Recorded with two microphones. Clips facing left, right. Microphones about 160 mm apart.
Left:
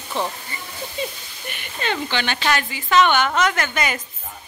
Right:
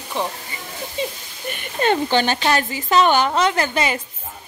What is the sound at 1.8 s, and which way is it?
A woman's voice, 45° right (ahead or behind).